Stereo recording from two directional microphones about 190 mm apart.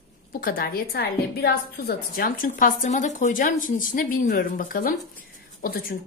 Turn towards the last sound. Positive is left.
turn(degrees=50)  # may be behind; listen again after turning